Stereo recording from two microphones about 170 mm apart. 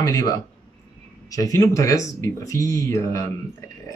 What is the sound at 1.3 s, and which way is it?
Speech, 20° left (ahead or behind).